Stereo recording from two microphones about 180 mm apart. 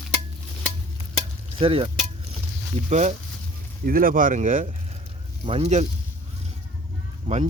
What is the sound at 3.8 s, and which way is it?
Speech, 55° right (ahead or behind).